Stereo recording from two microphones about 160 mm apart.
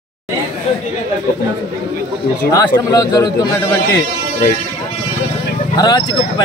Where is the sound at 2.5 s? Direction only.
25° left (ahead or behind).